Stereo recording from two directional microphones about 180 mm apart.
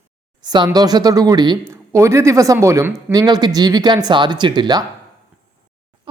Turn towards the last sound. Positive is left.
turn(degrees=-25)  # may be behind; listen again after turning